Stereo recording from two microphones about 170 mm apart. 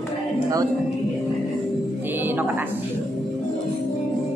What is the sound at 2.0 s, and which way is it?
Music, 10° right (ahead or behind).